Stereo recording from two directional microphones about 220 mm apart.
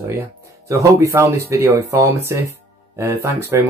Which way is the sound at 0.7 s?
15° right (ahead or behind).